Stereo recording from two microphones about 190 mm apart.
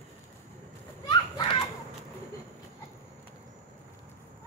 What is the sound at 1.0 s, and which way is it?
Children playing, 25° left (ahead or behind).